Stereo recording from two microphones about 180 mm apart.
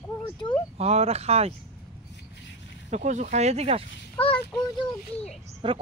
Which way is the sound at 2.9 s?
40° right (ahead or behind).